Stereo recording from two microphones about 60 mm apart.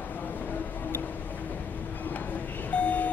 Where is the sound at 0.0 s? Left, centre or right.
Left.